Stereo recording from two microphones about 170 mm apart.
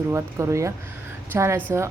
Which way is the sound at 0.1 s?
15° right (ahead or behind).